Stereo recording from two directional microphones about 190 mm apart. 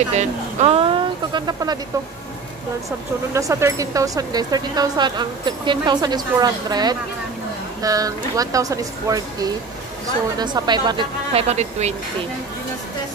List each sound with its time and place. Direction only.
0.1 s speech: 35° right (ahead or behind)
3.3 s speech: 15° right (ahead or behind); by 11.9 s 35° right (ahead or behind)